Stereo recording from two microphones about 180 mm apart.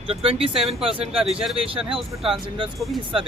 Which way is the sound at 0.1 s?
30° right (ahead or behind).